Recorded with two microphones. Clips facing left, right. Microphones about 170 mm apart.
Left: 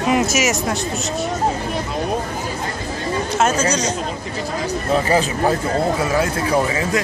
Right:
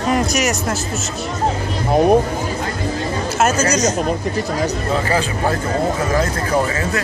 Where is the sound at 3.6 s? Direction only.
30° left (ahead or behind).